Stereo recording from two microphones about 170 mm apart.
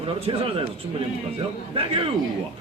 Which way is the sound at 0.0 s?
35° right (ahead or behind).